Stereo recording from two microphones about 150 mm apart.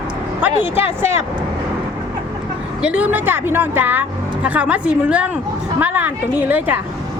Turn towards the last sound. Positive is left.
turn(degrees=-10)  # may be behind; listen again after turning